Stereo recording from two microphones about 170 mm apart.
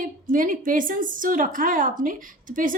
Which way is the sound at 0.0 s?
50° right (ahead or behind).